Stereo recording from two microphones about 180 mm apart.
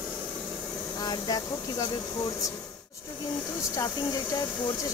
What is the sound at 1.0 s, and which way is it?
Speech, 20° left (ahead or behind).